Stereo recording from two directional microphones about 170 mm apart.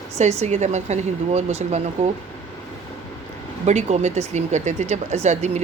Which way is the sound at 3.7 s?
40° right (ahead or behind).